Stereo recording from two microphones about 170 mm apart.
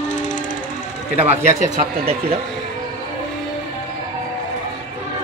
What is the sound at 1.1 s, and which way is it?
Speech, 40° right (ahead or behind).